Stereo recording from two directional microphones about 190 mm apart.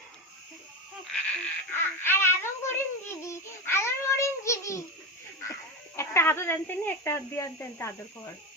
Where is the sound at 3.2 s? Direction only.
15° left (ahead or behind).